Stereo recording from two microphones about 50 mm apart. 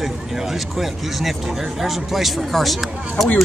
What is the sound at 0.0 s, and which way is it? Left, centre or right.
Speech, centre.